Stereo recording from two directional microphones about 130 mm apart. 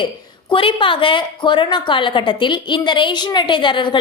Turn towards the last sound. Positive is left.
turn(degrees=40)  # may be behind; listen again after turning